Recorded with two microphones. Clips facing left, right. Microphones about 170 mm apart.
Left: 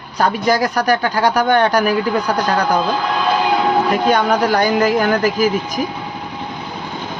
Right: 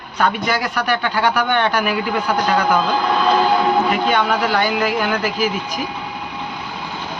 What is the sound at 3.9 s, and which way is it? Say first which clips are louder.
Speech: left 3 dB; 40° left (ahead or behind).